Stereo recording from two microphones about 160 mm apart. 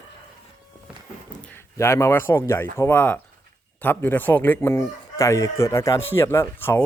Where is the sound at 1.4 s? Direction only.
15° left (ahead or behind).